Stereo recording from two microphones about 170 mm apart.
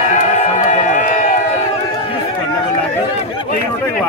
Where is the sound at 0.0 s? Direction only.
45° left (ahead or behind).